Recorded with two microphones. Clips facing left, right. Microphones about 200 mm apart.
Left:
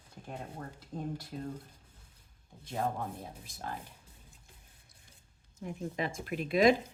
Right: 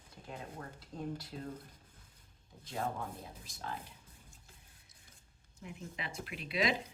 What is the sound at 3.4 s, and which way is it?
Speech, 50° left (ahead or behind).